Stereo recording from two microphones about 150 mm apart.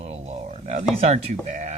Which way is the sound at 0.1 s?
50° right (ahead or behind).